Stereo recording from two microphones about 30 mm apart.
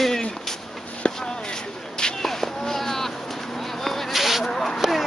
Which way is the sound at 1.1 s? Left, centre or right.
Left.